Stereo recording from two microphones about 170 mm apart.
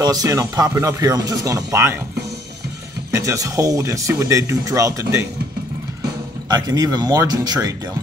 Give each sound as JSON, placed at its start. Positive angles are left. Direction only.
{"t": 0.0, "sound": "speech", "side_deg": -20}
{"t": 3.1, "sound": "speech", "side_deg": -20}
{"t": 6.0, "sound": "speech", "side_deg": -20}